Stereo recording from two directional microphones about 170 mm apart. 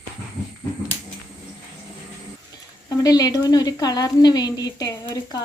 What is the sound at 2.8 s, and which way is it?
Speech, 20° left (ahead or behind).